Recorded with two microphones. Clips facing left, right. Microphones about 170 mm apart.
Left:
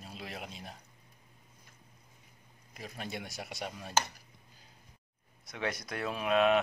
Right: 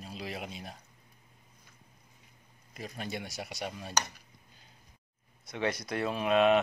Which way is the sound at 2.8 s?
Centre (ahead or behind).